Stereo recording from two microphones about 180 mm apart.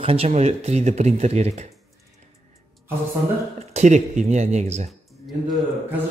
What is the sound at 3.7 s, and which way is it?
Speech, 40° right (ahead or behind).